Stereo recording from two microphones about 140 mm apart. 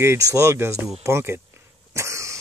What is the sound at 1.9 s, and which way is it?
Cough, 20° right (ahead or behind).